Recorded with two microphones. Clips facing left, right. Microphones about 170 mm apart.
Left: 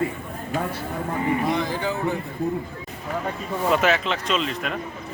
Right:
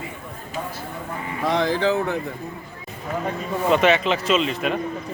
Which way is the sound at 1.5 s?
90° right.